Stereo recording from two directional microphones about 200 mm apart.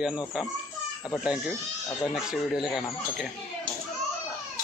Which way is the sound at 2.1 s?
Centre (ahead or behind).